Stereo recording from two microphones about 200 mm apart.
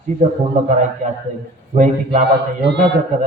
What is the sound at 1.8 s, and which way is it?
Speech, 35° right (ahead or behind).